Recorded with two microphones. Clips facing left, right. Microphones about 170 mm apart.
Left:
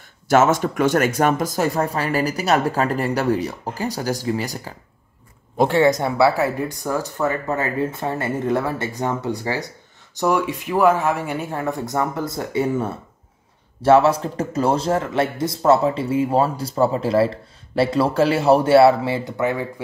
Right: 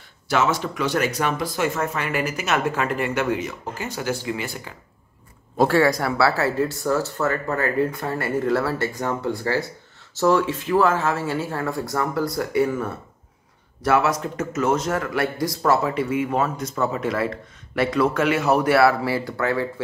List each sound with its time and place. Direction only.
0.3 s speech: 50° left (ahead or behind)
5.6 s a man's voice: 20° left (ahead or behind)
13.8 s a man's voice: 30° left (ahead or behind)